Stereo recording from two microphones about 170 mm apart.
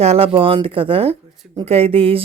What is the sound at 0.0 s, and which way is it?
Speech, 35° right (ahead or behind).